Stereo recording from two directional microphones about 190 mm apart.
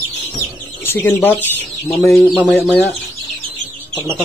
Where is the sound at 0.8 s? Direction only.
10° left (ahead or behind); by 2.5 s 5° right (ahead or behind).